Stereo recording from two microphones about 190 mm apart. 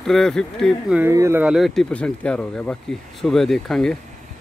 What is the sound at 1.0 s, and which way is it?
Speech, 15° right (ahead or behind).